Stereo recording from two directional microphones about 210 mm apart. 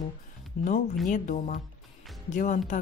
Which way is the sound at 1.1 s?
40° left (ahead or behind).